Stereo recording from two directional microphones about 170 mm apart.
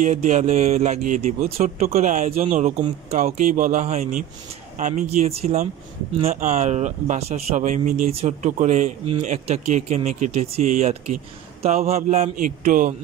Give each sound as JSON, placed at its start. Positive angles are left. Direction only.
{"t": 0.0, "sound": "speech", "side_deg": -45}